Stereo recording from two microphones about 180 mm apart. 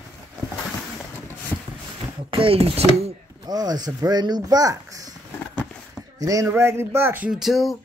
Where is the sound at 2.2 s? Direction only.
30° right (ahead or behind).